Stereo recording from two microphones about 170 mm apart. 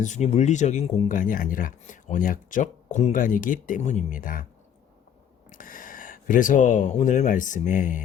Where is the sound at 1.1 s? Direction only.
50° left (ahead or behind).